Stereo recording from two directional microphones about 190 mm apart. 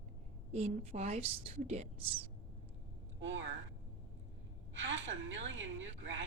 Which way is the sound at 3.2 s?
75° right (ahead or behind).